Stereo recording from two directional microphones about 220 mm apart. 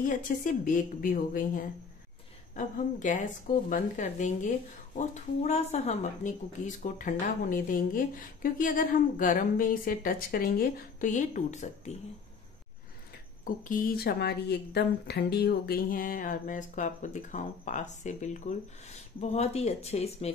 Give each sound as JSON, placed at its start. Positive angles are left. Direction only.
{"t": 0.4, "sound": "speech", "side_deg": 35}
{"t": 13.4, "sound": "speech", "side_deg": 40}